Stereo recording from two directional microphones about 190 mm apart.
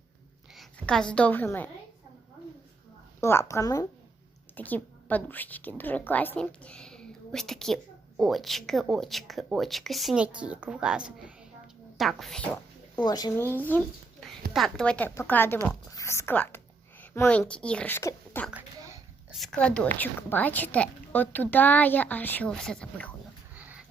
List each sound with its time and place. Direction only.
0.5 s a woman's voice: centre (ahead or behind)
3.2 s a woman's voice: 15° left (ahead or behind)
13.1 s a woman's voice: 20° left (ahead or behind)
23.6 s pig: 10° right (ahead or behind)